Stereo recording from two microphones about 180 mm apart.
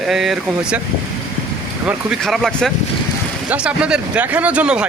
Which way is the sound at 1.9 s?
Centre (ahead or behind).